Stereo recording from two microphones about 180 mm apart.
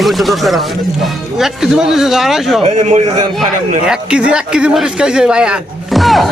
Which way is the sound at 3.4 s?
5° right (ahead or behind).